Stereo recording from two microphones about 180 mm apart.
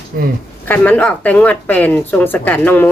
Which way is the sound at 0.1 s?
55° right (ahead or behind).